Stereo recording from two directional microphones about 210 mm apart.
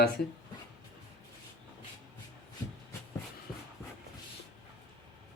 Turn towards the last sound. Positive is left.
turn(degrees=0)  # may be behind; listen again after turning